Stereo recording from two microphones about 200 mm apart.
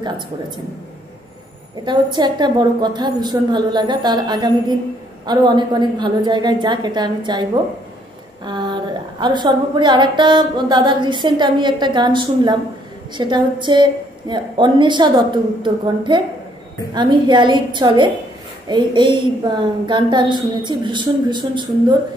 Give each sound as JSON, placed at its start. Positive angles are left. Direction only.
{"t": 1.9, "sound": "a woman's voice", "side_deg": -20}
{"t": 8.5, "sound": "a woman's voice", "side_deg": -20}